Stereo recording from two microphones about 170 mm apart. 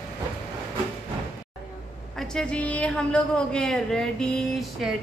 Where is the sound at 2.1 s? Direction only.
5° left (ahead or behind).